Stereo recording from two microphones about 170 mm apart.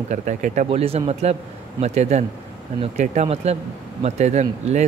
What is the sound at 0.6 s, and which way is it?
Speech, 35° right (ahead or behind).